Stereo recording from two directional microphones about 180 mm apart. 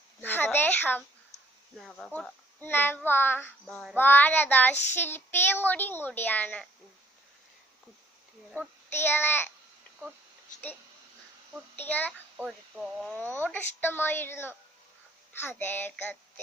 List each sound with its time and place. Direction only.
0.2 s speech: 10° left (ahead or behind)
1.3 s a sound: 40° left (ahead or behind)
1.8 s a child's voice: centre (ahead or behind)
8.9 s a child's voice: 10° left (ahead or behind)
11.8 s a child's voice: 10° left (ahead or behind)
12.4 s speech: centre (ahead or behind)
13.4 s a child's voice: 10° left (ahead or behind)